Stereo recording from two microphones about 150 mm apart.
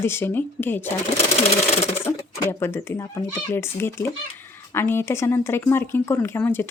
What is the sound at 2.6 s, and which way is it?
Speech, 15° left (ahead or behind).